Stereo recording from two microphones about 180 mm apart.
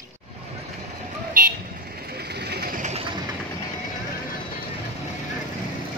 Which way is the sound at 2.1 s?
65° right (ahead or behind).